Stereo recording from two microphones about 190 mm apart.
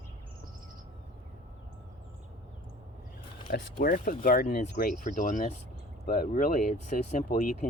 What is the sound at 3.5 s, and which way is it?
Speech, 50° left (ahead or behind).